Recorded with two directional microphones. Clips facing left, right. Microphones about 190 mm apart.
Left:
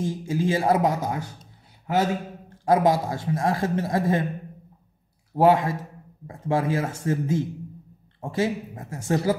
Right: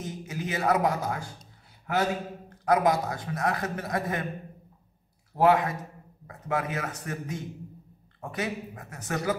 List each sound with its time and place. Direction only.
0.0 s a man's voice: 30° left (ahead or behind)
2.6 s a man's voice: 25° left (ahead or behind)
5.4 s a man's voice: 25° left (ahead or behind)